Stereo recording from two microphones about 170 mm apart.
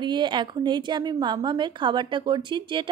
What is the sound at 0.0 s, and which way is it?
A woman's voice, 25° right (ahead or behind).